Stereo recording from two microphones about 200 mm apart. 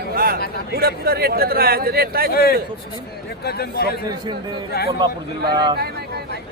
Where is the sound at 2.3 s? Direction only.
50° left (ahead or behind).